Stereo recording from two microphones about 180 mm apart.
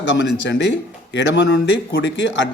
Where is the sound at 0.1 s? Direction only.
80° left.